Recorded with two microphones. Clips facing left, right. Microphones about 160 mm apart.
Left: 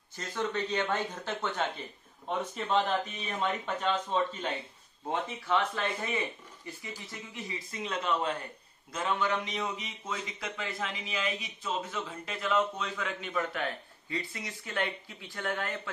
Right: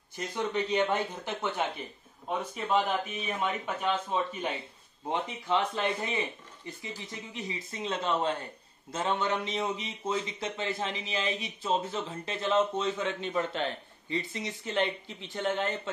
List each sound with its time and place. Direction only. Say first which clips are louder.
0.1 s a man's voice: right 2 dB; 15° right (ahead or behind)